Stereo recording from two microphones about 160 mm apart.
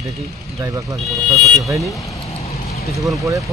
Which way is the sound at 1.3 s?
Centre (ahead or behind).